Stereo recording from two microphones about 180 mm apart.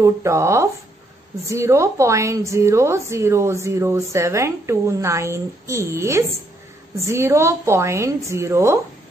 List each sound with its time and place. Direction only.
0.0 s a woman's voice: 15° right (ahead or behind)